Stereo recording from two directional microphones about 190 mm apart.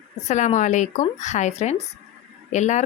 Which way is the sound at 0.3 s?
40° left (ahead or behind).